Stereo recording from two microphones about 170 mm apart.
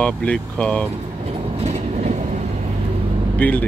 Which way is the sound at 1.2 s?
35° right (ahead or behind).